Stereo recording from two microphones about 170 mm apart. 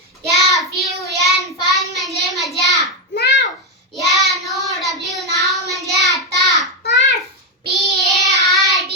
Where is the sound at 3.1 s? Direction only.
75° left (ahead or behind).